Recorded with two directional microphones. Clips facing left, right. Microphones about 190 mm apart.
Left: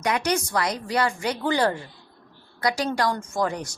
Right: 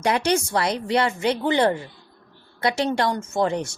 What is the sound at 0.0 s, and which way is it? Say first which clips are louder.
A woman's voice: right 3 dB; 30° right (ahead or behind).